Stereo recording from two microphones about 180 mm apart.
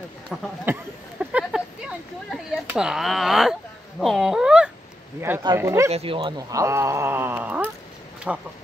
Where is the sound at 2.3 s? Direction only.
5° right (ahead or behind).